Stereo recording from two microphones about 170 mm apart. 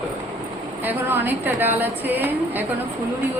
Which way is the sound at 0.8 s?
10° right (ahead or behind).